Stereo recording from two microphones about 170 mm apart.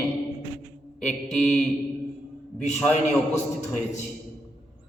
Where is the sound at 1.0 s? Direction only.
5° left (ahead or behind).